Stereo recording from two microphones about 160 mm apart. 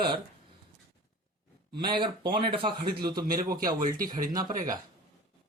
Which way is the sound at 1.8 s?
30° right (ahead or behind).